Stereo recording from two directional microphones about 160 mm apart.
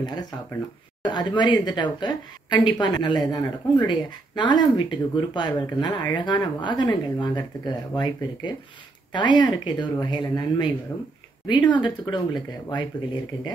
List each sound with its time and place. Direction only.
0.0 s a woman's voice: 25° left (ahead or behind)